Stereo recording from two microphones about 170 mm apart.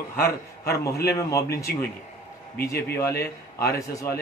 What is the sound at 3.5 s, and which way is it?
Speech, 20° left (ahead or behind).